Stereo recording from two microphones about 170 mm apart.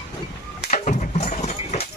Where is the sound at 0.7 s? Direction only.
40° left (ahead or behind).